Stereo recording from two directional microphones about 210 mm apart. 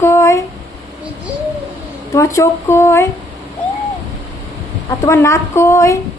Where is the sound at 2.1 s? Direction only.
15° left (ahead or behind).